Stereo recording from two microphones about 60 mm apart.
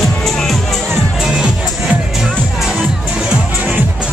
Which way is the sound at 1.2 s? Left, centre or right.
Centre.